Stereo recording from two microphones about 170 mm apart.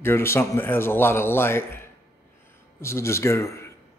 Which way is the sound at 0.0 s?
15° left (ahead or behind).